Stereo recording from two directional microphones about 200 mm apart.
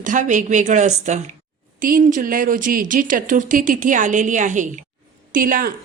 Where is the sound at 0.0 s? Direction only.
40° right (ahead or behind).